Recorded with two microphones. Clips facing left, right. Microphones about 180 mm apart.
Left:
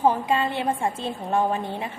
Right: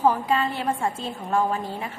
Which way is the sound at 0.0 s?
25° left (ahead or behind).